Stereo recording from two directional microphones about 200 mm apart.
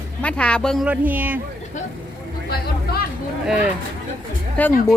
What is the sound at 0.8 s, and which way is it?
Speech, 10° right (ahead or behind).